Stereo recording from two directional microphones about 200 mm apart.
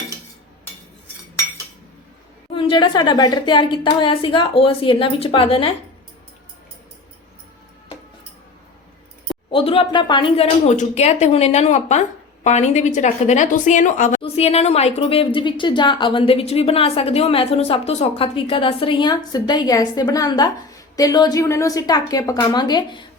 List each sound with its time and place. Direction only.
2.6 s speech: 25° left (ahead or behind)
9.5 s speech: 25° left (ahead or behind)